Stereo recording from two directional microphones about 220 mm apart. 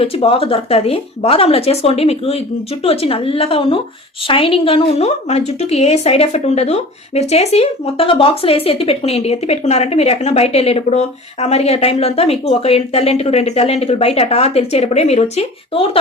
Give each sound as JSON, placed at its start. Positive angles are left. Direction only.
{"t": 0.0, "sound": "a woman's voice", "side_deg": 25}